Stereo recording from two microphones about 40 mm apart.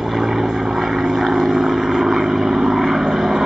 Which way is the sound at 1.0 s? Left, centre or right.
Centre.